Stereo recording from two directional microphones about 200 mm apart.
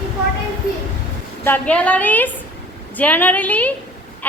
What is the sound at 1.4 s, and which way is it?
A woman's voice, 10° left (ahead or behind).